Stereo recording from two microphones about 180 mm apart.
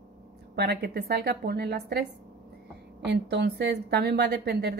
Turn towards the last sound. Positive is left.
turn(degrees=-65)  # may be behind; listen again after turning